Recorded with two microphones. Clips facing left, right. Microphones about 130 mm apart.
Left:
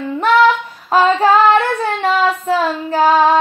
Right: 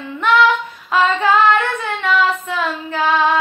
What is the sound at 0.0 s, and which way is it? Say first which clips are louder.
Female singing: left 3 dB; 35° left (ahead or behind).